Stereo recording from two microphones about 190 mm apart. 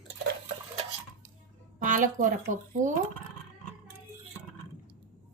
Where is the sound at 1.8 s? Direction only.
45° right (ahead or behind).